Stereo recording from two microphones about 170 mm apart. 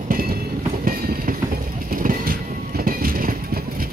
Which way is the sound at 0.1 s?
60° right (ahead or behind).